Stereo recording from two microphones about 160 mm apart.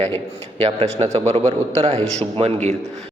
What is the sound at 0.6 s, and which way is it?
A man's voice, 40° right (ahead or behind).